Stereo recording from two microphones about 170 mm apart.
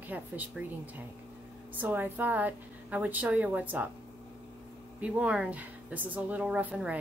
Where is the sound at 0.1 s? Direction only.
10° right (ahead or behind).